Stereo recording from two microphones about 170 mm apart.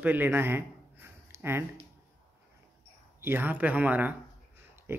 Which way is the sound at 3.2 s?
10° right (ahead or behind).